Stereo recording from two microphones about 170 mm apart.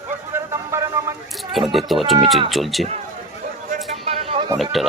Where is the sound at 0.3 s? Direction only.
15° right (ahead or behind).